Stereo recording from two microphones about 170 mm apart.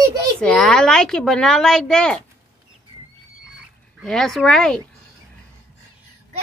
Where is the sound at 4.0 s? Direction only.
Centre (ahead or behind).